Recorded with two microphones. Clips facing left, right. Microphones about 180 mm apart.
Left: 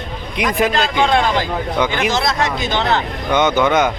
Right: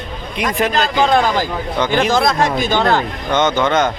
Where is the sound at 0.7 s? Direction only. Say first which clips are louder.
Right 1 dB; 40° right (ahead or behind).